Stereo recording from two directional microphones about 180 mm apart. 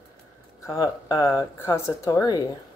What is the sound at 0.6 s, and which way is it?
Speech, 20° left (ahead or behind).